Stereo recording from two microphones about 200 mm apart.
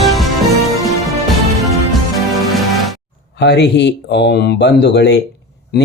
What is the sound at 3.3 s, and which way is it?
Speech, 55° left (ahead or behind).